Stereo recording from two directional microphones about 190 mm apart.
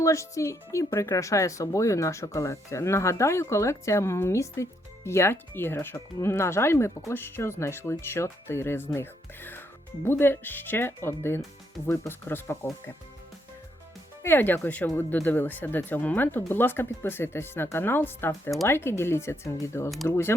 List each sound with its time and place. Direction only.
0.0 s speech: 15° left (ahead or behind)
14.2 s speech: 10° left (ahead or behind)